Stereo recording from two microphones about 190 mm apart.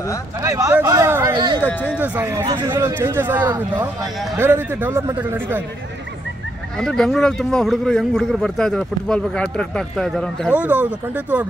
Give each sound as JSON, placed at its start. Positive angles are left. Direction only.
{"t": 0.4, "sound": "a man's voice", "side_deg": -15}
{"t": 1.6, "sound": "speech", "side_deg": 10}
{"t": 2.0, "sound": "a man's voice", "side_deg": -10}
{"t": 2.4, "sound": "a man's voice", "side_deg": -20}
{"t": 6.8, "sound": "speech", "side_deg": 5}
{"t": 10.5, "sound": "a man's voice", "side_deg": -10}